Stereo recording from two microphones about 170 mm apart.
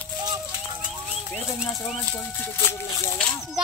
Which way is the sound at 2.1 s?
15° left (ahead or behind).